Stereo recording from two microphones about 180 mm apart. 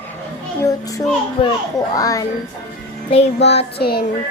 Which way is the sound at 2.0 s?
20° left (ahead or behind).